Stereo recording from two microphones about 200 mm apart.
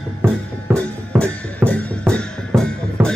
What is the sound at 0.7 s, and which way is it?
Music, 10° right (ahead or behind).